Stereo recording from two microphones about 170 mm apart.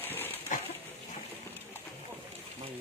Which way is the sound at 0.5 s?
50° left (ahead or behind).